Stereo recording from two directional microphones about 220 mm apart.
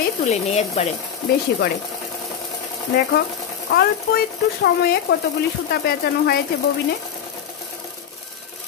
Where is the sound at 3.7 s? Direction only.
45° left (ahead or behind).